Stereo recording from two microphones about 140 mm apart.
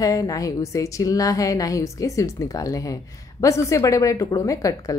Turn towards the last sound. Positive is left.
turn(degrees=25)  # may be behind; listen again after turning